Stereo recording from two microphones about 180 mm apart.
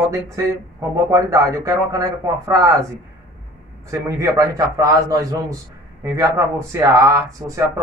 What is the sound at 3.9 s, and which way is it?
A man's voice, 20° right (ahead or behind).